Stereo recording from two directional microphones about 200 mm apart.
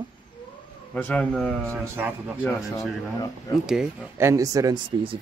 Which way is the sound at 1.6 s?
15° right (ahead or behind).